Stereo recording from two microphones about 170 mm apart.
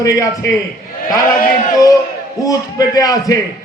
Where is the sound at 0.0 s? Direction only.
20° left (ahead or behind).